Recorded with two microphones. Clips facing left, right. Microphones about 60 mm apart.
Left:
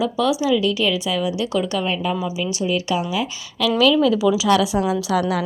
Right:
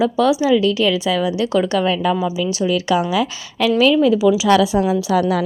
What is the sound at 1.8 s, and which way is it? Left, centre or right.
Speech, right.